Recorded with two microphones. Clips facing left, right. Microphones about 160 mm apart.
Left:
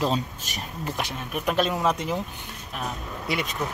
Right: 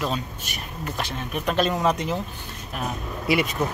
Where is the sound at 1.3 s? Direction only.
5° left (ahead or behind).